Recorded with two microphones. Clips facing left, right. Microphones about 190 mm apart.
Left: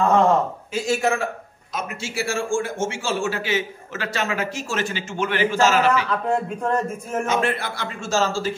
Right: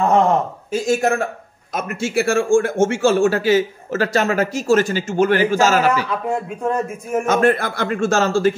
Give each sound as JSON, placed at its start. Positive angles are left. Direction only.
{"t": 0.7, "sound": "a man's voice", "side_deg": -45}
{"t": 6.0, "sound": "a man's voice", "side_deg": -10}
{"t": 7.2, "sound": "a man's voice", "side_deg": -45}